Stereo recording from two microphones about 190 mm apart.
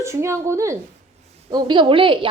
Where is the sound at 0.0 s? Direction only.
15° right (ahead or behind).